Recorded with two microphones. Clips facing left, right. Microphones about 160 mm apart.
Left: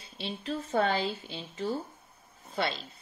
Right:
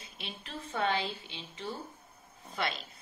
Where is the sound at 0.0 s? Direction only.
35° left (ahead or behind).